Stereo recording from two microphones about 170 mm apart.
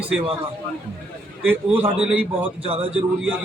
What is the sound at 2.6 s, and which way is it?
Speech, 35° right (ahead or behind).